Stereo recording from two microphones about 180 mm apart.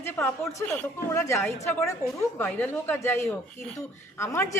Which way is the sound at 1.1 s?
15° left (ahead or behind).